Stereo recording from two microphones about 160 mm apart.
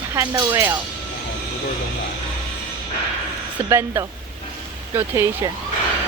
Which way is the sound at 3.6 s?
15° right (ahead or behind).